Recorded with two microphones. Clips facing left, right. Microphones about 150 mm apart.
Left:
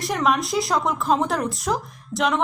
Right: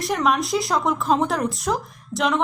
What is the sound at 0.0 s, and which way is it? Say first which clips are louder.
Speech: right 1 dB; centre (ahead or behind).